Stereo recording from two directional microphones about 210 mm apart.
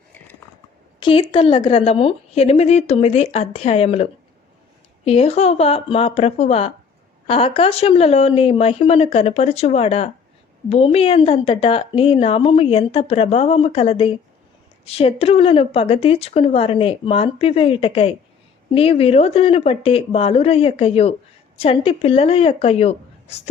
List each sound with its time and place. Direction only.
0.9 s speech: 25° left (ahead or behind)